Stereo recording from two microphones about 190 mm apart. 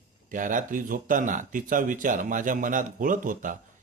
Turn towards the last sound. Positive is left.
turn(degrees=-45)  # may be behind; listen again after turning